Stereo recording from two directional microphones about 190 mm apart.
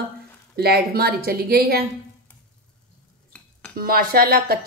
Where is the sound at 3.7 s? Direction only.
50° right (ahead or behind).